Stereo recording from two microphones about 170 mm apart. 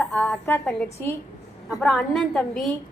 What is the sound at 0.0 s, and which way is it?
A woman's voice, 5° left (ahead or behind).